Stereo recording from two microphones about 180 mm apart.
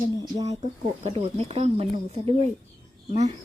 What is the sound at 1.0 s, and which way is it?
Speech, 35° right (ahead or behind).